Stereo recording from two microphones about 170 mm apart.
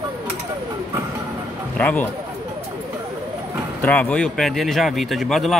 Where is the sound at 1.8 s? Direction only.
10° left (ahead or behind).